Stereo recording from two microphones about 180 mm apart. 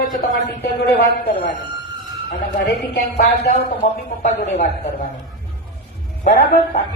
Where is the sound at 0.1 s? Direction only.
55° left (ahead or behind).